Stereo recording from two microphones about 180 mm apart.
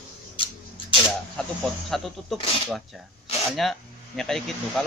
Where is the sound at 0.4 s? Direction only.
30° left (ahead or behind).